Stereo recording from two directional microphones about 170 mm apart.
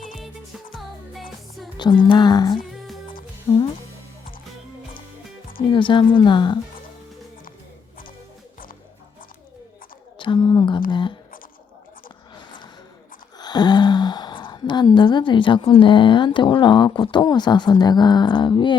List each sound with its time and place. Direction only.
0.7 s music: centre (ahead or behind)
1.8 s a woman's voice: 25° left (ahead or behind)
5.6 s a woman's voice: 30° left (ahead or behind)
10.2 s a sound: 30° left (ahead or behind)
13.4 s a woman's voice: 25° left (ahead or behind)